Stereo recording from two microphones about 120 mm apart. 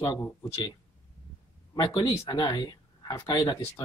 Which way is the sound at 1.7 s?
35° left (ahead or behind).